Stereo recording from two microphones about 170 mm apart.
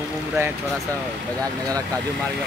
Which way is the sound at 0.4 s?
15° right (ahead or behind).